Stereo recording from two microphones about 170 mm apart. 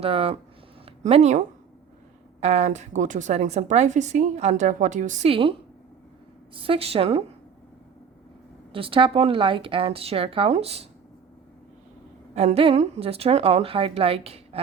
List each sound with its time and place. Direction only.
0.0 s a woman's voice: 35° right (ahead or behind)
2.4 s a woman's voice: 40° right (ahead or behind)
5.3 s a woman's voice: 30° right (ahead or behind)
8.7 s a woman's voice: 30° right (ahead or behind)
12.3 s a woman's voice: 40° right (ahead or behind)